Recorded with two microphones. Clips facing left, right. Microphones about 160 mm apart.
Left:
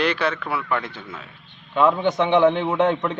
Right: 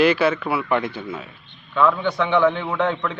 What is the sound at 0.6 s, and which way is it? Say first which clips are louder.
Speech: right 5 dB; 20° right (ahead or behind).